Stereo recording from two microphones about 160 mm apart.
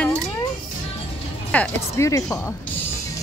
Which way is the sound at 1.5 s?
10° left (ahead or behind).